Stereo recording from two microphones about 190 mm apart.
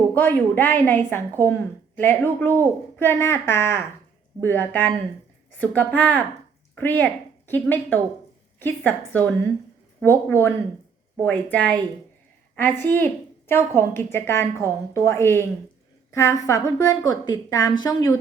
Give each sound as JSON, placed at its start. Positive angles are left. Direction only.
{"t": 0.1, "sound": "a woman's voice", "side_deg": 10}